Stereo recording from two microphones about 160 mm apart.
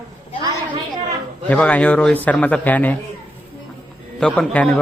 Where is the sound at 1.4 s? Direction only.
10° left (ahead or behind).